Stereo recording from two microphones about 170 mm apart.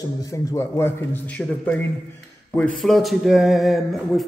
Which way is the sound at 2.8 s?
Centre (ahead or behind).